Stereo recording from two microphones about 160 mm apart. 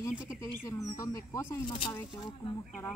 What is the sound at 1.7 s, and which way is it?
Speech, 30° left (ahead or behind).